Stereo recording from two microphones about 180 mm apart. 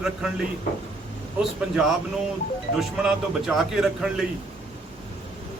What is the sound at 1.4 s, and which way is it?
Speech, centre (ahead or behind).